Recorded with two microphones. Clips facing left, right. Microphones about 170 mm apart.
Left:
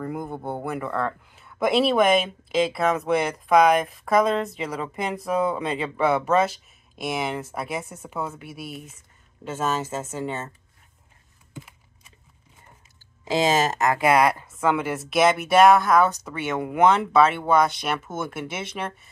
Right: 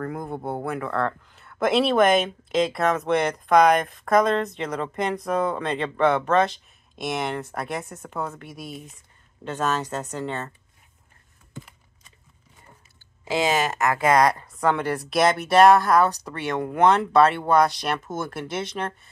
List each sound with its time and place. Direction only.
0.0 s speech: 5° left (ahead or behind)
13.2 s speech: 20° left (ahead or behind)